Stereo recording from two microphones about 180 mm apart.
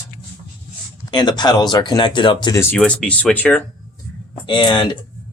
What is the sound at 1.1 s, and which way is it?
A man's voice, 25° left (ahead or behind).